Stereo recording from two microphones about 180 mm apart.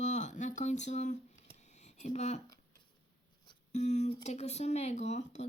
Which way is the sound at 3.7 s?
40° left (ahead or behind).